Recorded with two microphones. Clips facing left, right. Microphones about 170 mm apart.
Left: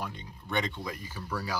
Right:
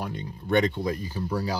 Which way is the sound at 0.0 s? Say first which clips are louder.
Right 6 dB; 45° right (ahead or behind).